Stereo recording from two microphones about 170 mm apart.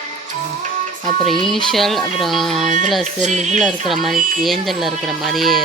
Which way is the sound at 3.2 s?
45° right (ahead or behind).